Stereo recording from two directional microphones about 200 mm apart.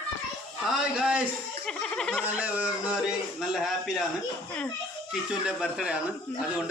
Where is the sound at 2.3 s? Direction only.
5° right (ahead or behind).